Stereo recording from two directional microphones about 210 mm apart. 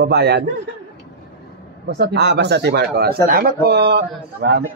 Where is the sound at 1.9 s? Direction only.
50° right (ahead or behind).